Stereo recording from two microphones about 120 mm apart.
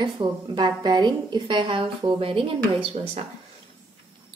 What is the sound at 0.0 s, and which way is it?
A woman's voice, 40° right (ahead or behind).